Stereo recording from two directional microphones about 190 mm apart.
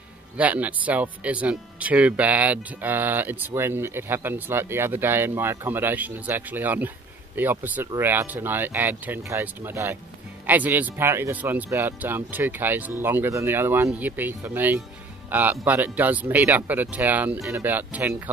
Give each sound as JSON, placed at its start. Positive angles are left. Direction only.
{"t": 0.4, "sound": "speech", "side_deg": -5}